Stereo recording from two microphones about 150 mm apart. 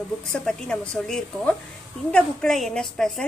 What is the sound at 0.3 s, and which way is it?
A woman's voice, 5° left (ahead or behind).